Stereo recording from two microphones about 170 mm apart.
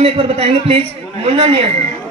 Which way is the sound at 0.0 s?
35° right (ahead or behind).